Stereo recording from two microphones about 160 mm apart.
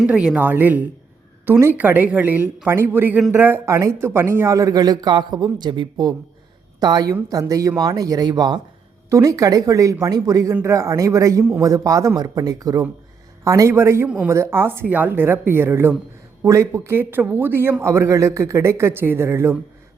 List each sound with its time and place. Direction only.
0.0 s speech: 5° right (ahead or behind)